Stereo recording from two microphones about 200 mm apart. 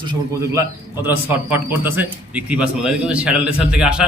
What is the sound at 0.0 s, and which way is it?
Speech, 20° right (ahead or behind).